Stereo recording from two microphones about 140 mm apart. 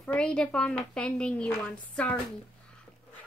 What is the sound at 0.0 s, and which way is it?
Child singing, 10° left (ahead or behind).